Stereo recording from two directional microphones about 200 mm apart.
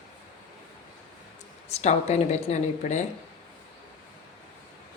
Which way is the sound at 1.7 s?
35° left (ahead or behind).